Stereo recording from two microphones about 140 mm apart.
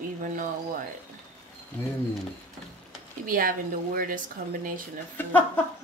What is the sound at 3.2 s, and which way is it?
Speech, 85° right.